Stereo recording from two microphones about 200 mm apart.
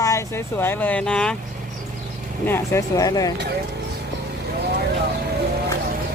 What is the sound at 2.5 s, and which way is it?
Speech, 15° left (ahead or behind).